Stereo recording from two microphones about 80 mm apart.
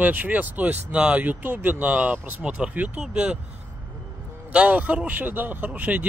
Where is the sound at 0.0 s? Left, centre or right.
Right.